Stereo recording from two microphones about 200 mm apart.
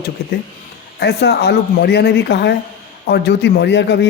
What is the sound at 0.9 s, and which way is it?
A man's voice, 55° left (ahead or behind).